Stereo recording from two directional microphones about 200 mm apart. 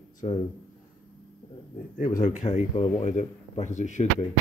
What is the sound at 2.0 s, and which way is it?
Speech, 40° left (ahead or behind).